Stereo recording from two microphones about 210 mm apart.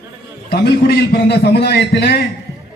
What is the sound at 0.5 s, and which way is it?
A man's voice, 50° left (ahead or behind).